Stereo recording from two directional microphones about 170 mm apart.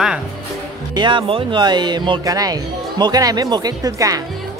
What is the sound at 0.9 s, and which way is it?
Speech, 30° right (ahead or behind).